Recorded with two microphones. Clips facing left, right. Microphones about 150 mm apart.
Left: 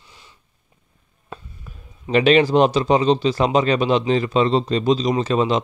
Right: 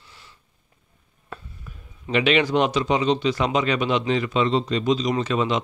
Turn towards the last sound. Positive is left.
turn(degrees=35)  # may be behind; listen again after turning